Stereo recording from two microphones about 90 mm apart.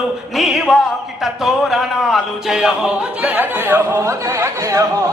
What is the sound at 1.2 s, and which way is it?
Speech, centre (ahead or behind).